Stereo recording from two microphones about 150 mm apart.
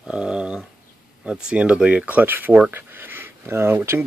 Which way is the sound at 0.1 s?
5° right (ahead or behind).